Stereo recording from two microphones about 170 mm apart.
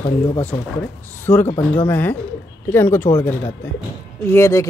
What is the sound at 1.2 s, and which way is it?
A man's voice, 10° left (ahead or behind).